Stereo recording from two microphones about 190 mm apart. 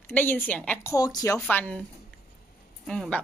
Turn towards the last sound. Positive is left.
turn(degrees=5)  # may be behind; listen again after turning